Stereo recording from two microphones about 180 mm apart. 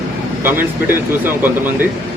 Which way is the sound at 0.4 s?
10° right (ahead or behind).